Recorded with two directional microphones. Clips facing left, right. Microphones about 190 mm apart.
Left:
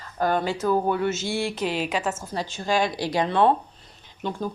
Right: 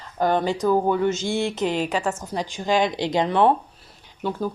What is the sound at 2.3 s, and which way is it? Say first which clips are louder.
Speech: right 3 dB; 15° right (ahead or behind).